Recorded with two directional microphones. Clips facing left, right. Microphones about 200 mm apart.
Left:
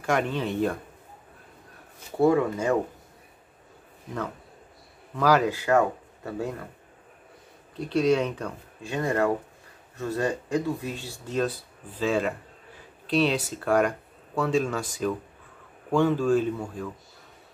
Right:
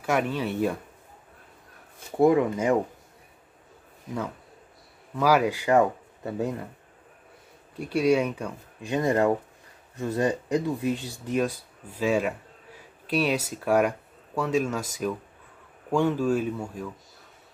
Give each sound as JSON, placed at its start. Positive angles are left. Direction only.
{"t": 0.0, "sound": "speech", "side_deg": -5}
{"t": 2.2, "sound": "speech", "side_deg": -15}
{"t": 5.1, "sound": "speech", "side_deg": -10}
{"t": 7.7, "sound": "speech", "side_deg": -10}
{"t": 8.9, "sound": "speech", "side_deg": -20}